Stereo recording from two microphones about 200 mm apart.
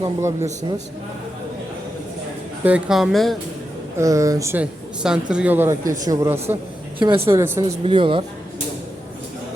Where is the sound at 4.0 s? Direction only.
15° right (ahead or behind).